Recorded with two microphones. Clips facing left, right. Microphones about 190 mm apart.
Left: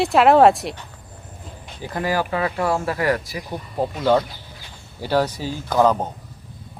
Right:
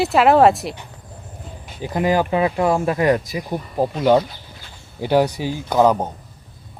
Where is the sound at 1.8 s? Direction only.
20° right (ahead or behind).